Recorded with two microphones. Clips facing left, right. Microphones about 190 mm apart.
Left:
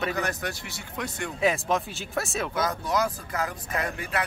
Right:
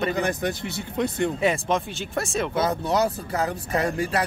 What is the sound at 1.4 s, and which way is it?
Speech, centre (ahead or behind).